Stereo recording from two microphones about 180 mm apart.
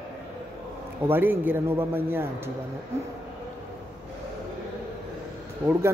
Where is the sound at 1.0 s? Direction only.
10° right (ahead or behind).